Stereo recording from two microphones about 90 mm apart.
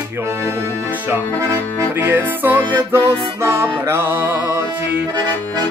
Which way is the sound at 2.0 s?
20° right (ahead or behind).